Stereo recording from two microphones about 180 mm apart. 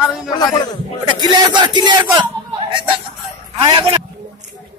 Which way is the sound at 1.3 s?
25° right (ahead or behind).